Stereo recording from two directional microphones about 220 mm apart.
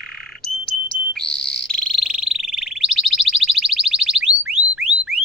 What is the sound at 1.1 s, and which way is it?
Frog, centre (ahead or behind).